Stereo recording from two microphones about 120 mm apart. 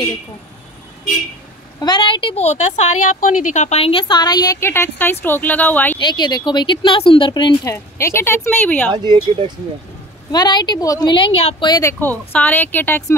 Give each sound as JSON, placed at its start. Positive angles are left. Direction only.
{"t": 1.8, "sound": "a woman's voice", "side_deg": 40}
{"t": 2.3, "sound": "speech", "side_deg": 70}
{"t": 4.2, "sound": "speech", "side_deg": 35}
{"t": 4.6, "sound": "speech", "side_deg": 20}
{"t": 5.9, "sound": "speech", "side_deg": 40}
{"t": 7.6, "sound": "speech", "side_deg": 20}
{"t": 8.9, "sound": "speech", "side_deg": -40}
{"t": 10.3, "sound": "speech", "side_deg": 35}
{"t": 11.1, "sound": "a woman's voice", "side_deg": 50}
{"t": 11.8, "sound": "speech", "side_deg": 15}